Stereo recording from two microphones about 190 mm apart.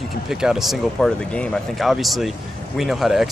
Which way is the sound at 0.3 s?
5° right (ahead or behind).